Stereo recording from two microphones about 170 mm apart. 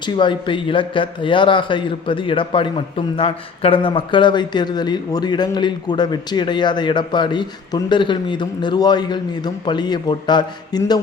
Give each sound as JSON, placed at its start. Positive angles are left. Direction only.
{"t": 0.0, "sound": "speech", "side_deg": 30}